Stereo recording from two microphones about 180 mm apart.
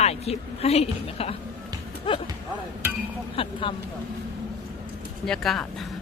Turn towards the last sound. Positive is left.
turn(degrees=5)  # may be behind; listen again after turning